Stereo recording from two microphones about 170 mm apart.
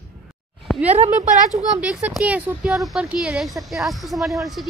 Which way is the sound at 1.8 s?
5° right (ahead or behind).